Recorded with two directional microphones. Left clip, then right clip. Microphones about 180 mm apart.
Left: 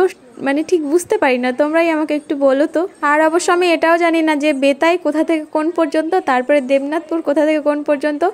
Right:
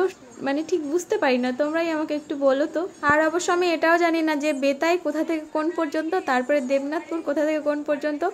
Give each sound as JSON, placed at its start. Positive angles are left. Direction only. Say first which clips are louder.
{"t": 0.0, "sound": "a woman's voice", "louder": "left 8 dB", "side_deg": 40}